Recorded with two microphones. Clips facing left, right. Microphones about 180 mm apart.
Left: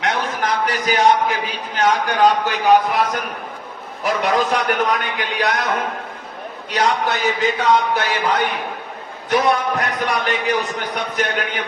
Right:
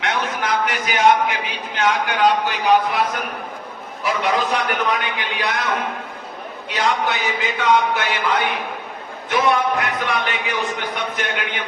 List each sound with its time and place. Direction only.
0.0 s a man's voice: 40° left (ahead or behind)
6.7 s a man's voice: 45° left (ahead or behind)